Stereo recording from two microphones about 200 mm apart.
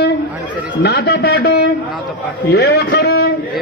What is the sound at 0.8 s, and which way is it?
A man's voice, 55° left (ahead or behind).